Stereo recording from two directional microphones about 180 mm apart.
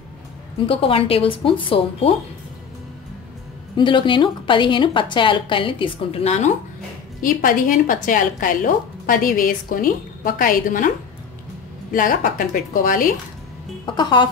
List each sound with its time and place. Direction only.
0.7 s speech: 30° left (ahead or behind)
3.7 s a woman's voice: 25° left (ahead or behind)
7.2 s a woman's voice: 50° left (ahead or behind)
11.9 s a woman's voice: 50° left (ahead or behind)
13.8 s a woman's voice: 25° left (ahead or behind)